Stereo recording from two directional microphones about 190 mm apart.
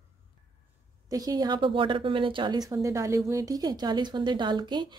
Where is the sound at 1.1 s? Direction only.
20° right (ahead or behind).